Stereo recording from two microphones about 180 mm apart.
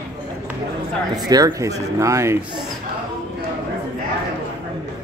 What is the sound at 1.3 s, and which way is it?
Speech, 20° right (ahead or behind).